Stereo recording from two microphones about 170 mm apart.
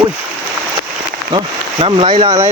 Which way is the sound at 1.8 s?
30° right (ahead or behind).